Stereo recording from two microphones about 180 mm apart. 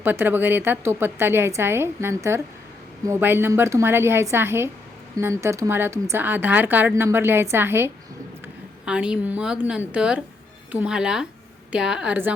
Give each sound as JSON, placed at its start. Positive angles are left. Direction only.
{"t": 0.0, "sound": "a woman's voice", "side_deg": -10}